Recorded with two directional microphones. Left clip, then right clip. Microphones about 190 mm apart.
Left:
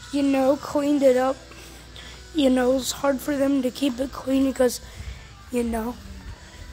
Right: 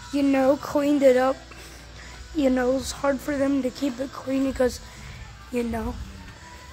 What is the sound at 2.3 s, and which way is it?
Speech, 15° left (ahead or behind).